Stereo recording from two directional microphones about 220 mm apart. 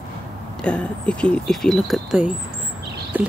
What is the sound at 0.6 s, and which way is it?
Speech, 5° left (ahead or behind).